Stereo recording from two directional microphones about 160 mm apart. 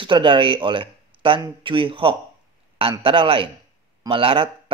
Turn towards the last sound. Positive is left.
turn(degrees=-35)  # may be behind; listen again after turning